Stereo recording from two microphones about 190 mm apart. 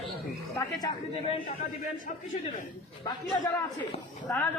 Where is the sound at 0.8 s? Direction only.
20° left (ahead or behind).